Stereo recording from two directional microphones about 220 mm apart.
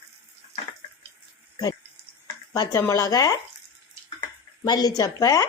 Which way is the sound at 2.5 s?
15° left (ahead or behind).